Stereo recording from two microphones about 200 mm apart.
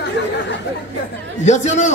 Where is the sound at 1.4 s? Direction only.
35° left (ahead or behind).